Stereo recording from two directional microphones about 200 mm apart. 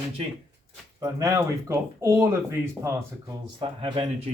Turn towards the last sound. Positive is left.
turn(degrees=-25)  # may be behind; listen again after turning